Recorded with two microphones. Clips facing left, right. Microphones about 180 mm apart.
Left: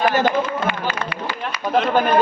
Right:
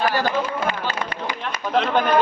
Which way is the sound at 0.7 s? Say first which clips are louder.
Left 1 dB; 40° right (ahead or behind).